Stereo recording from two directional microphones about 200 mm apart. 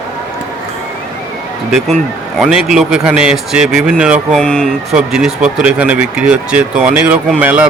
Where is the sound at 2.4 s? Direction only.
5° right (ahead or behind).